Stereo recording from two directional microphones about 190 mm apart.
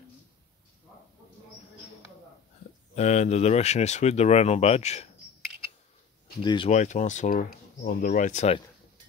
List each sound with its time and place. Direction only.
3.0 s speech: 35° left (ahead or behind)
6.4 s speech: 25° left (ahead or behind)
6.7 s speech: 40° left (ahead or behind)